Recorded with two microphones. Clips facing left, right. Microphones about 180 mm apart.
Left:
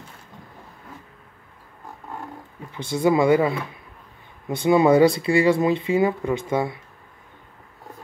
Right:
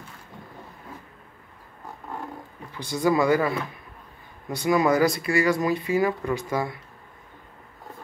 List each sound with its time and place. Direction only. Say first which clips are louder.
2.7 s speech: left 3 dB; 25° left (ahead or behind)